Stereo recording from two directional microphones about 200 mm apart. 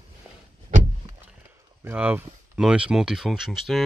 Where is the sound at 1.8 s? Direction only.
10° right (ahead or behind).